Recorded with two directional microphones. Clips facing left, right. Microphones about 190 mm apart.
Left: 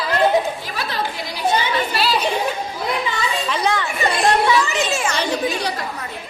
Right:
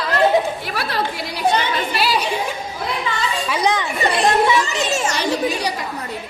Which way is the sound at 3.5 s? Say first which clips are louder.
Right 2 dB; 15° right (ahead or behind).